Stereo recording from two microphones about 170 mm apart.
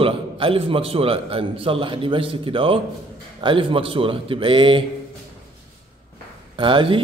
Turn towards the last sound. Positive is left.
turn(degrees=-30)  # may be behind; listen again after turning